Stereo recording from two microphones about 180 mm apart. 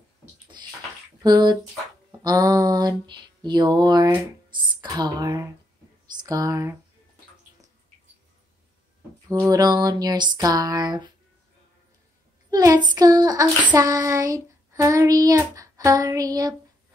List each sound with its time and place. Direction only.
1.2 s mantra: 20° right (ahead or behind)
9.3 s mantra: 20° right (ahead or behind)
12.4 s child singing: 20° right (ahead or behind)
12.8 s mantra: 20° right (ahead or behind)